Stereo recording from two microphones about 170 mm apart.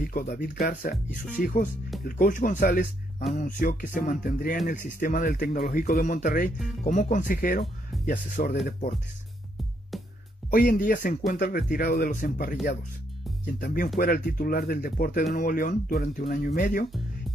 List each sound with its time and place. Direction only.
0.1 s speech: 55° left (ahead or behind)
10.5 s speech: 55° left (ahead or behind)
13.6 s speech: 65° left (ahead or behind)